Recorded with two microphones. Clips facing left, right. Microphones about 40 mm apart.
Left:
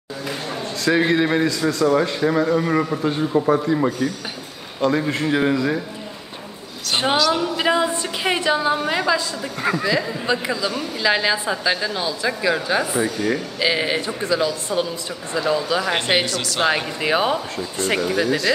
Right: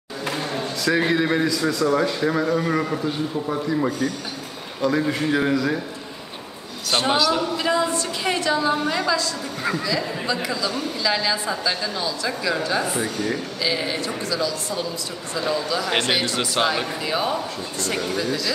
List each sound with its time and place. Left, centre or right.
0.8 s a man's voice: centre
3.0 s speech: left
3.6 s a man's voice: centre
7.5 s a woman's voice: left
16.3 s speech: centre
16.6 s speech: left